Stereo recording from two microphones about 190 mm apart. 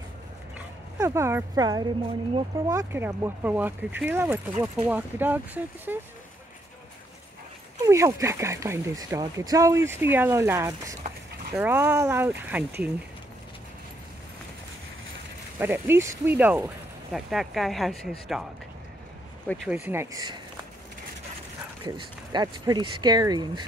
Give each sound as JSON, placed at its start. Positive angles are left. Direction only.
{"t": 0.6, "sound": "speech", "side_deg": -15}
{"t": 2.7, "sound": "speech", "side_deg": -15}
{"t": 7.8, "sound": "speech", "side_deg": -15}
{"t": 15.6, "sound": "speech", "side_deg": -10}
{"t": 19.4, "sound": "speech", "side_deg": 5}
{"t": 19.7, "sound": "speech", "side_deg": -10}
{"t": 21.8, "sound": "speech", "side_deg": -20}